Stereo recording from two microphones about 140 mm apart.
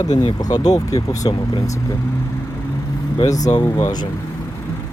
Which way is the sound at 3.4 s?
25° left (ahead or behind).